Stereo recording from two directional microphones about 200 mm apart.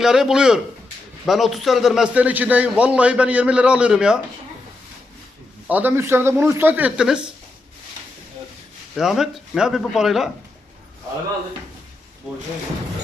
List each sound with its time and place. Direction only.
0.0 s a man's voice: centre (ahead or behind)
5.6 s speech: 10° right (ahead or behind)
9.0 s a man's voice: centre (ahead or behind)